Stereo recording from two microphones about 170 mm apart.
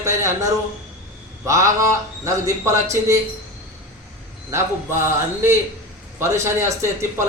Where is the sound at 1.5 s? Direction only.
20° right (ahead or behind).